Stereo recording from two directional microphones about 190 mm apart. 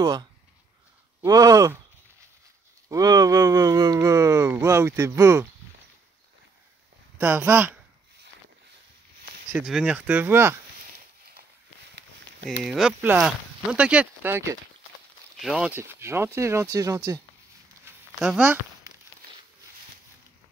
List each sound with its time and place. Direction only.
0.0 s speech: 20° right (ahead or behind)
2.9 s speech: 20° right (ahead or behind)
7.2 s speech: 10° right (ahead or behind)
9.7 s speech: 5° right (ahead or behind)
12.6 s speech: 5° right (ahead or behind)
15.4 s speech: 5° right (ahead or behind)
18.4 s a sound: 10° right (ahead or behind)